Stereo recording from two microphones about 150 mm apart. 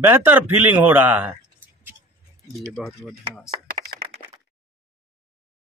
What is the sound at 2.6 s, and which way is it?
Speech, centre (ahead or behind).